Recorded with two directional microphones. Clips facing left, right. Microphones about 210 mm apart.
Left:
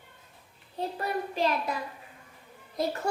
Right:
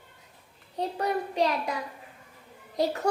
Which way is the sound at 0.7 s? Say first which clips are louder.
Right 3 dB; 20° right (ahead or behind).